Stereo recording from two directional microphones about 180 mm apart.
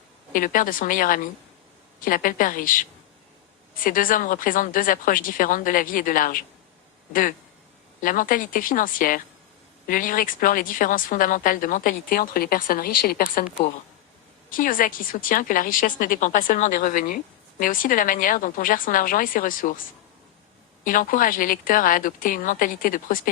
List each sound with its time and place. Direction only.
0.3 s a woman's voice: 50° left (ahead or behind)
3.8 s a woman's voice: 50° left (ahead or behind)
14.5 s a woman's voice: 50° left (ahead or behind)
20.8 s a woman's voice: 50° left (ahead or behind)